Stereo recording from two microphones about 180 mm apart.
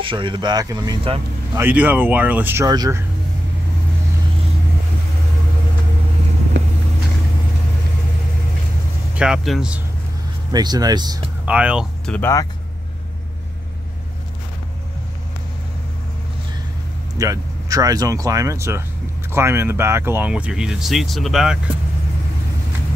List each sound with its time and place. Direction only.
0.0 s speech: 30° right (ahead or behind)
1.5 s speech: 10° right (ahead or behind)
6.5 s vehicle: 80° right
9.1 s speech: 5° right (ahead or behind)
10.5 s speech: 20° right (ahead or behind)
11.4 s speech: 5° right (ahead or behind)
12.1 s speech: 15° left (ahead or behind)
17.2 s speech: 20° right (ahead or behind); by 21.5 s centre (ahead or behind)